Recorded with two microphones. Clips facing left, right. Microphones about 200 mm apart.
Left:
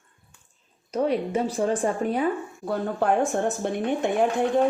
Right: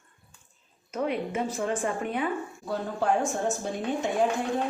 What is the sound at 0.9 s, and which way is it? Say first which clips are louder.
Speech: left 5 dB; 35° left (ahead or behind).